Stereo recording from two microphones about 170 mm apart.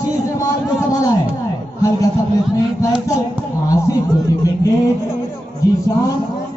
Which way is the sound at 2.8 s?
20° left (ahead or behind).